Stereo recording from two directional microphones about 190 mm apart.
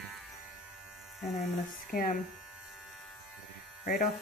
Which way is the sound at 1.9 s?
45° left (ahead or behind).